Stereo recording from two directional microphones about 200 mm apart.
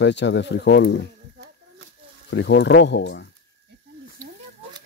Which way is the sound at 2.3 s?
60° left (ahead or behind).